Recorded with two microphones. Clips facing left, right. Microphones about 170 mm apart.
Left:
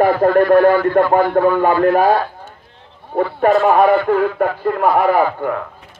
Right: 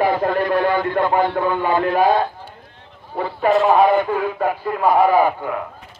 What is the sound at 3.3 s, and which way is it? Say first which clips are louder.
A man's voice: left 2 dB; 50° left (ahead or behind).